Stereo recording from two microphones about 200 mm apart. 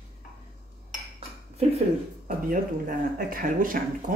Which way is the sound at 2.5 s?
45° right (ahead or behind).